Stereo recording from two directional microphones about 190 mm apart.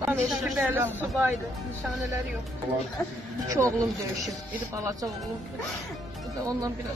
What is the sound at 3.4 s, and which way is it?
Speech, 15° right (ahead or behind).